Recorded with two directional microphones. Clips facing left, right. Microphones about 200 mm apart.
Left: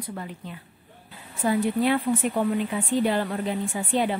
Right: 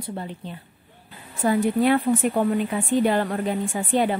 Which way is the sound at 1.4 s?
50° right (ahead or behind).